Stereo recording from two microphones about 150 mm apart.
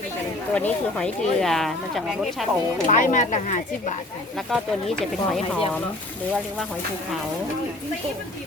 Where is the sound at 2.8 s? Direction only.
60° left (ahead or behind).